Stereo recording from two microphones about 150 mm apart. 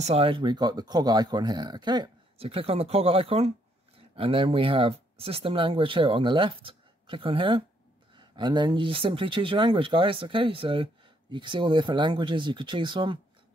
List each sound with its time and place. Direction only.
0.0 s speech: 40° right (ahead or behind)